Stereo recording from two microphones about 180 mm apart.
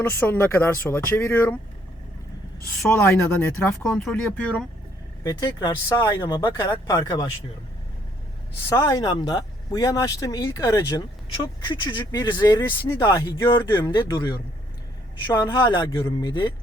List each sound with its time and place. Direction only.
0.0 s speech: 10° left (ahead or behind)
2.9 s speech: 15° left (ahead or behind)
5.2 s speech: 20° left (ahead or behind)
8.7 s speech: 20° left (ahead or behind)